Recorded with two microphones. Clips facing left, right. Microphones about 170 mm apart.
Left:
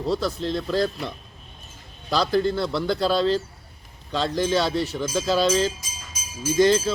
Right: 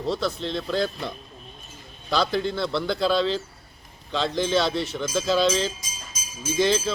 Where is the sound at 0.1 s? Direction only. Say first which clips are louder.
Left 2 dB; 10° left (ahead or behind).